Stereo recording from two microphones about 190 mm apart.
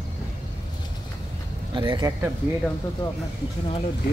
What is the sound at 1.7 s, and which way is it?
Speech, 25° right (ahead or behind).